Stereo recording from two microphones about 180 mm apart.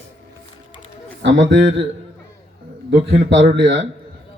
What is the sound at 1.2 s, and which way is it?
Speech, 80° right.